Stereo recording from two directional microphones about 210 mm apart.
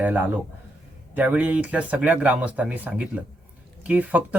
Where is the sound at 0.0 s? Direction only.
5° right (ahead or behind).